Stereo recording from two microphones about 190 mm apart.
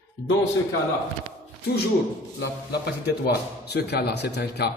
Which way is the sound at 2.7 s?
55° left (ahead or behind).